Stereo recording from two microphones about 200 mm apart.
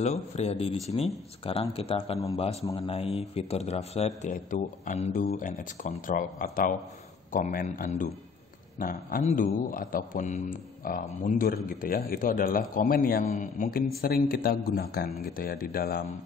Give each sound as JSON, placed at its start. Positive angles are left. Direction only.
{"t": 0.0, "sound": "a man's voice", "side_deg": 35}